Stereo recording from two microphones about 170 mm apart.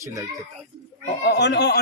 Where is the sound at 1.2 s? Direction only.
85° left.